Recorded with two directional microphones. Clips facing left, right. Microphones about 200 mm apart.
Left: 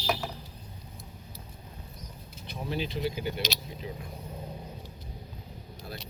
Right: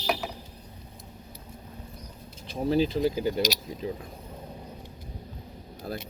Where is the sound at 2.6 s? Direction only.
35° right (ahead or behind).